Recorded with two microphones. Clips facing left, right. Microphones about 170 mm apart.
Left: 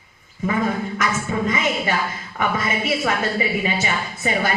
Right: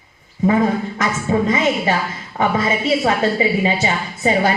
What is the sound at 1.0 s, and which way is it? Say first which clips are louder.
A woman's voice: right 6 dB; 30° right (ahead or behind).